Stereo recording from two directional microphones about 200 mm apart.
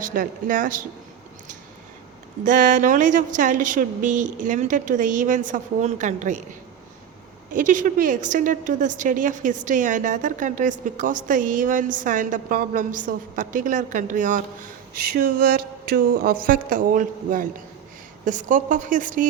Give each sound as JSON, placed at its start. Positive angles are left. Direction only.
{"t": 0.0, "sound": "a woman's voice", "side_deg": -40}
{"t": 2.4, "sound": "a woman's voice", "side_deg": -40}
{"t": 7.5, "sound": "a woman's voice", "side_deg": -40}
{"t": 15.1, "sound": "a woman's voice", "side_deg": -50}